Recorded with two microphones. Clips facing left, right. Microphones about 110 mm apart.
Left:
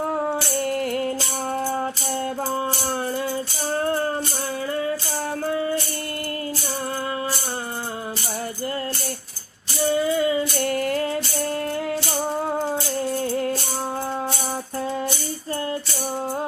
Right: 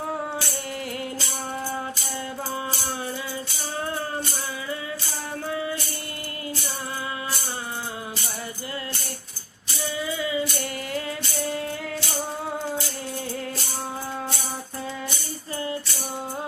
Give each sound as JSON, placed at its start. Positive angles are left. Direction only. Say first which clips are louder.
{"t": 0.6, "sound": "music", "louder": "left 8 dB", "side_deg": 50}
{"t": 5.5, "sound": "music", "louder": "left 4 dB", "side_deg": 40}
{"t": 9.9, "sound": "music", "louder": "left 7 dB", "side_deg": 50}